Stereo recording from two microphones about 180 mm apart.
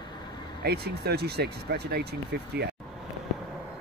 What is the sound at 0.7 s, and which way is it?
Speech, 60° right (ahead or behind).